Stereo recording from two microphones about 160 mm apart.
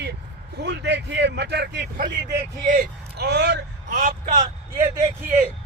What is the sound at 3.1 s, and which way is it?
Speech, 90° right.